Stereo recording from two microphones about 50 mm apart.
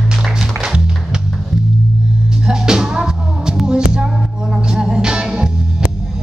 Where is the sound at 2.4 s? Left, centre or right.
Centre.